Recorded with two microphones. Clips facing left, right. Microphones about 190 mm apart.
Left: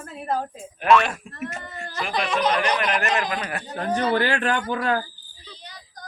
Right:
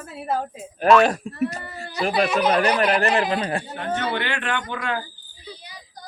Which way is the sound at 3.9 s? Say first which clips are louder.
Left 5 dB; 35° left (ahead or behind).